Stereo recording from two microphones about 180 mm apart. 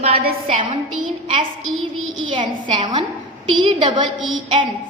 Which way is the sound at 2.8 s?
25° right (ahead or behind).